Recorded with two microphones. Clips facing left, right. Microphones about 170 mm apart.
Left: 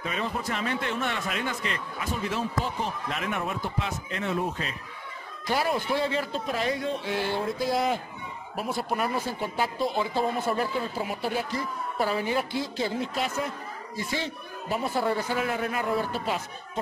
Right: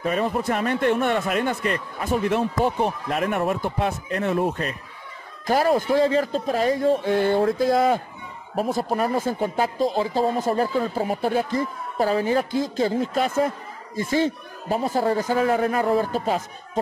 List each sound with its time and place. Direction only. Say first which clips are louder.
0.0 s speech: right 8 dB; 50° right (ahead or behind)